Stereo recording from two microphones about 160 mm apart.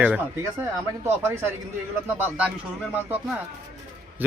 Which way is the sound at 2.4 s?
10° right (ahead or behind).